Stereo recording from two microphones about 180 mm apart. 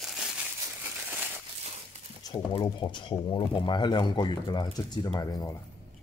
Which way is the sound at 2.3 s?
30° left (ahead or behind).